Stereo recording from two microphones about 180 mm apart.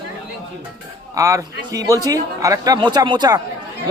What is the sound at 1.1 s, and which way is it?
Speech, 15° right (ahead or behind).